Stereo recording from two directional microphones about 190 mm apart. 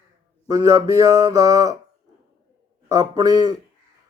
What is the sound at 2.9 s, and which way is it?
Speech, 20° right (ahead or behind).